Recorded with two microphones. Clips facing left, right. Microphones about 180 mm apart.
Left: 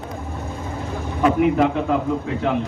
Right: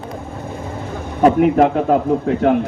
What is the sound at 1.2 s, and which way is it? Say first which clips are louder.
A man's voice: right 5 dB; 45° right (ahead or behind).